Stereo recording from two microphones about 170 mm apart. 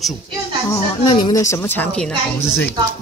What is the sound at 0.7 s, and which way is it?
A woman's voice, 25° left (ahead or behind).